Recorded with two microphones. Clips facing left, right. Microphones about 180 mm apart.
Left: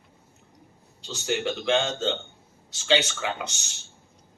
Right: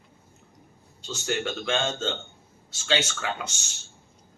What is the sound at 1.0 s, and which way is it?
Speech, 15° left (ahead or behind).